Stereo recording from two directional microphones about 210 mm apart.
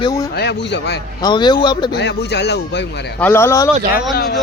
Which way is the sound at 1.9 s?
55° left (ahead or behind).